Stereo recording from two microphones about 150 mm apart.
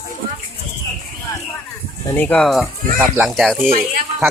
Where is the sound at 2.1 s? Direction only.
10° left (ahead or behind).